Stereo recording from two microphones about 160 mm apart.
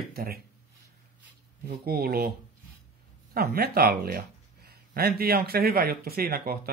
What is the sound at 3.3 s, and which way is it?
Speech, 80° right.